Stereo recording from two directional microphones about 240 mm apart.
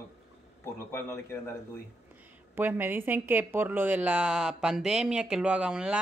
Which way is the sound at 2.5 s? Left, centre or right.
Centre.